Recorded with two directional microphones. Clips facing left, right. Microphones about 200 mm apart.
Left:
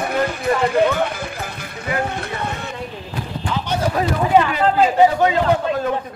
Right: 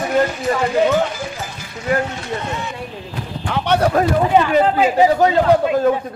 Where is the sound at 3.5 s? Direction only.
65° right (ahead or behind).